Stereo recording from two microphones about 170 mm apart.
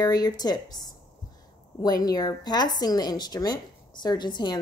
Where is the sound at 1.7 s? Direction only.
20° left (ahead or behind).